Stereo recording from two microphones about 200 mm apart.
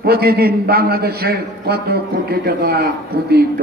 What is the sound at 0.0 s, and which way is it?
A man's voice, 50° right (ahead or behind).